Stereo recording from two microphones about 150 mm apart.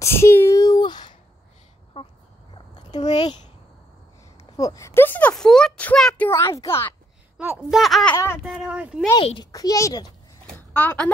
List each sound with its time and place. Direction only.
0.0 s a sound: 15° left (ahead or behind)
2.0 s a sound: 40° left (ahead or behind)
2.9 s a child's voice: 45° left (ahead or behind)
4.6 s speech: 20° left (ahead or behind); by 6.3 s 5° left (ahead or behind)
6.3 s a child's voice: 20° left (ahead or behind)
7.3 s speech: 10° right (ahead or behind)
8.1 s a child's voice: 20° left (ahead or behind)
8.5 s speech: 5° right (ahead or behind)
9.1 s a child's voice: 30° left (ahead or behind)
10.4 s a sound: 10° left (ahead or behind)